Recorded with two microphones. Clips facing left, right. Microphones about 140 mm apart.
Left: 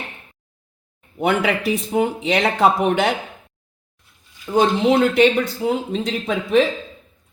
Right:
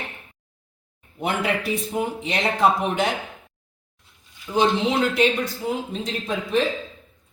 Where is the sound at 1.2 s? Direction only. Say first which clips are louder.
Left 5 dB; 70° left (ahead or behind).